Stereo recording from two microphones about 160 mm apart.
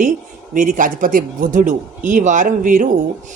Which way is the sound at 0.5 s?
55° right (ahead or behind).